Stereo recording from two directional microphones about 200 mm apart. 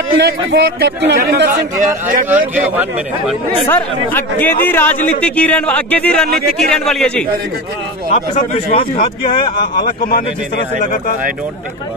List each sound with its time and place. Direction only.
0.2 s a man's voice: 55° right (ahead or behind)
2.2 s speech: 10° right (ahead or behind)
3.6 s a man's voice: 10° left (ahead or behind)
8.1 s a man's voice: 30° left (ahead or behind)
9.8 s speech: 45° left (ahead or behind)